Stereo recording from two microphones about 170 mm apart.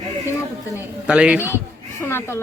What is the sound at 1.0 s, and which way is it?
Speech, 5° right (ahead or behind).